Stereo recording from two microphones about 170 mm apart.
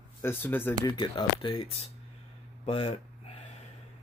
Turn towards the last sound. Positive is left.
turn(degrees=35)  # may be behind; listen again after turning